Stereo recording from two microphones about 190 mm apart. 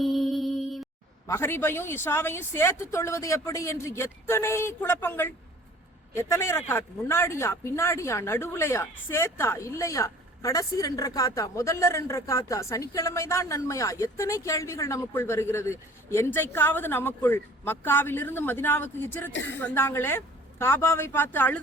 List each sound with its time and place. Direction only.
0.0 s music: centre (ahead or behind)
1.3 s speech: 15° left (ahead or behind)
19.3 s a woman's voice: 75° left (ahead or behind)
19.5 s speech: 10° left (ahead or behind)